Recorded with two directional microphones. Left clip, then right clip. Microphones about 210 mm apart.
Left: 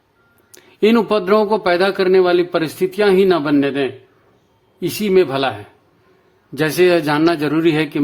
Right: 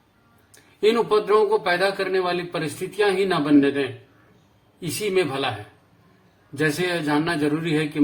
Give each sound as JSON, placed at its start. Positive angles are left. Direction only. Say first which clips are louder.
{"t": 0.5, "sound": "speech", "louder": "left 5 dB", "side_deg": 45}
{"t": 6.6, "sound": "speech", "louder": "left 9 dB", "side_deg": 50}